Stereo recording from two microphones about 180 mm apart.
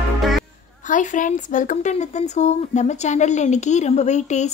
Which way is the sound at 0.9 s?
45° left (ahead or behind).